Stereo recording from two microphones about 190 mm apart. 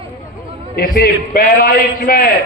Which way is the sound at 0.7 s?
50° left (ahead or behind).